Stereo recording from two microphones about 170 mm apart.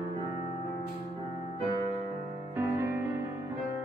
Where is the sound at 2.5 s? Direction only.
15° right (ahead or behind).